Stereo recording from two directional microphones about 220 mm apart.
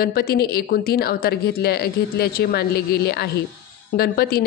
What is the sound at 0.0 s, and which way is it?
Speech, 45° left (ahead or behind).